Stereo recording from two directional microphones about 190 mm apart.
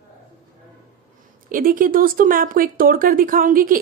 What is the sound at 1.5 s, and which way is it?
Speech, 45° right (ahead or behind).